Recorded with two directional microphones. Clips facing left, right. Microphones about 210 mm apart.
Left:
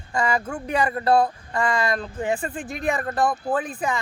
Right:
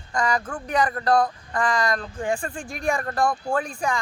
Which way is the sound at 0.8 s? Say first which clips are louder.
Left 3 dB; 25° left (ahead or behind).